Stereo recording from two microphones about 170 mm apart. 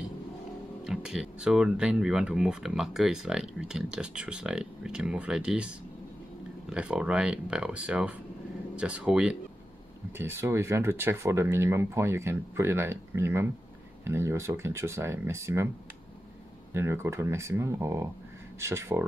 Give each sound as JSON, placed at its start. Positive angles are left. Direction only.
{"t": 0.8, "sound": "speech", "side_deg": 0}
{"t": 16.7, "sound": "speech", "side_deg": -15}